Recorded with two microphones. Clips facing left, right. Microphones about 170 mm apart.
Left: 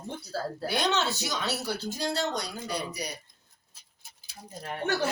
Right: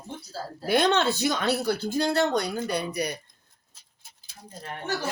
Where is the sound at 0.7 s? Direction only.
55° right (ahead or behind).